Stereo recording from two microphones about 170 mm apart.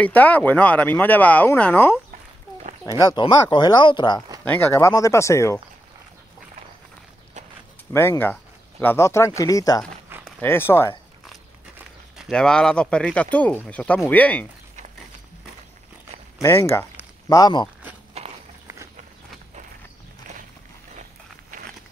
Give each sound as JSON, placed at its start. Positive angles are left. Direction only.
{"t": 0.0, "sound": "speech", "side_deg": 10}
{"t": 3.1, "sound": "speech", "side_deg": 25}
{"t": 4.5, "sound": "speech", "side_deg": 15}
{"t": 7.9, "sound": "speech", "side_deg": 15}
{"t": 10.0, "sound": "a sound", "side_deg": -10}
{"t": 10.4, "sound": "speech", "side_deg": 15}
{"t": 12.2, "sound": "speech", "side_deg": 5}
{"t": 16.3, "sound": "speech", "side_deg": 15}
{"t": 20.9, "sound": "walk", "side_deg": -50}